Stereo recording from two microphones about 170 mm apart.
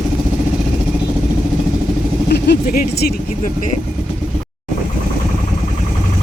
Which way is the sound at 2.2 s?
75° left (ahead or behind).